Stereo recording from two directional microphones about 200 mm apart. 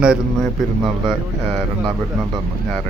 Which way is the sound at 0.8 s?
25° right (ahead or behind).